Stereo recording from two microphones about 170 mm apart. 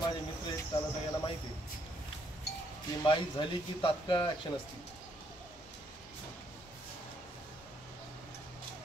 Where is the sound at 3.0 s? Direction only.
30° left (ahead or behind).